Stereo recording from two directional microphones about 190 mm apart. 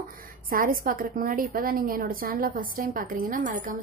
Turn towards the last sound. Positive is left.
turn(degrees=-45)  # may be behind; listen again after turning